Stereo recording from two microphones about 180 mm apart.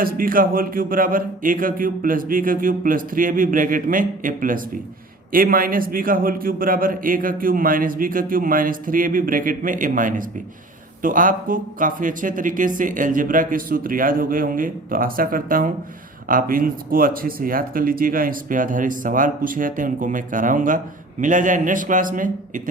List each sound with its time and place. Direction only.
0.0 s speech: 50° right (ahead or behind)